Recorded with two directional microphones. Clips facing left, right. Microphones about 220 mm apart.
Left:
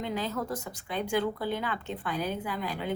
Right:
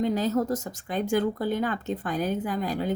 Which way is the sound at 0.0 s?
40° right (ahead or behind).